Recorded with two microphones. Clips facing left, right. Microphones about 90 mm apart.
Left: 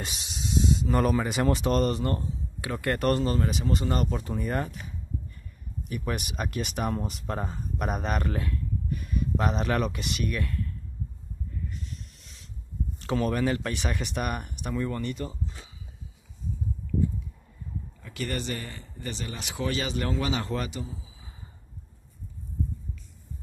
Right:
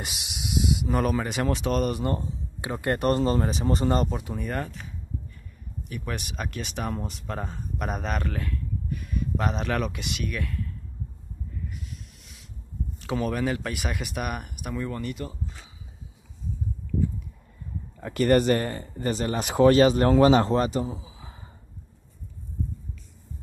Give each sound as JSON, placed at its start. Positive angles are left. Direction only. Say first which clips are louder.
{"t": 0.0, "sound": "speech", "louder": "even", "side_deg": -10}
{"t": 1.9, "sound": "speech", "louder": "right 1 dB", "side_deg": -15}
{"t": 4.2, "sound": "speech", "louder": "left 1 dB", "side_deg": 0}
{"t": 5.9, "sound": "speech", "louder": "left 2 dB", "side_deg": 5}
{"t": 11.7, "sound": "music", "louder": "even", "side_deg": -5}
{"t": 13.0, "sound": "speech", "louder": "left 1 dB", "side_deg": -5}
{"t": 18.0, "sound": "speech", "louder": "right 13 dB", "side_deg": -50}
{"t": 20.4, "sound": "a man's voice", "louder": "right 8 dB", "side_deg": -30}
{"t": 20.8, "sound": "a sound", "louder": "right 7 dB", "side_deg": -75}